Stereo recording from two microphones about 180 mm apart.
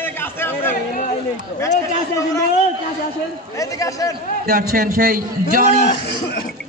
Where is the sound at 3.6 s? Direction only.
20° left (ahead or behind).